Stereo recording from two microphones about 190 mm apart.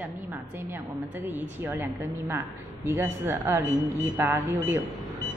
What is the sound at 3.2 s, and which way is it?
A woman's voice, 15° right (ahead or behind).